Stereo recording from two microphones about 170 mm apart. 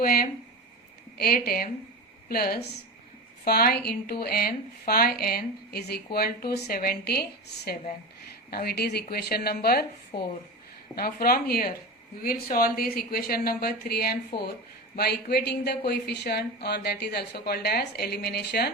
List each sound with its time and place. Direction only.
0.0 s speech: 60° left (ahead or behind)
10.9 s speech: 60° left (ahead or behind)